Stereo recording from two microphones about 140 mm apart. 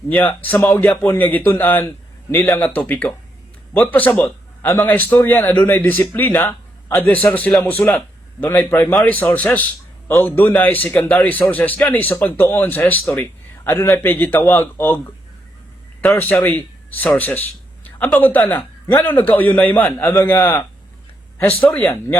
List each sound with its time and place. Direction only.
0.1 s a man's voice: 15° left (ahead or behind)